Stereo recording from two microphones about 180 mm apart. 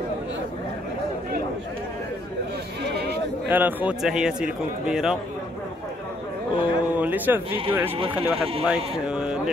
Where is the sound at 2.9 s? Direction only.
65° right (ahead or behind).